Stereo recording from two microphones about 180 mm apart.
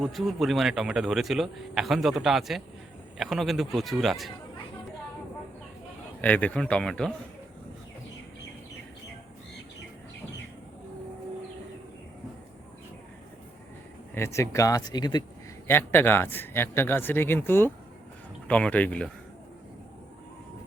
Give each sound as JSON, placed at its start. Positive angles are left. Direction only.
{"t": 0.0, "sound": "speech", "side_deg": 0}
{"t": 6.2, "sound": "speech", "side_deg": 10}
{"t": 14.1, "sound": "speech", "side_deg": 15}
{"t": 15.6, "sound": "speech", "side_deg": 10}